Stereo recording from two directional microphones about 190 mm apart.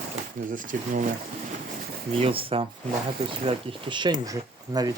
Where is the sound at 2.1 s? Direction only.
30° right (ahead or behind).